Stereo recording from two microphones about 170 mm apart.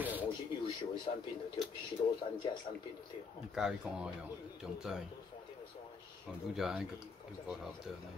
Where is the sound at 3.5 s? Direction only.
5° right (ahead or behind).